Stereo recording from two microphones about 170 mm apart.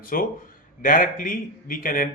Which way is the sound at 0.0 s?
55° left (ahead or behind).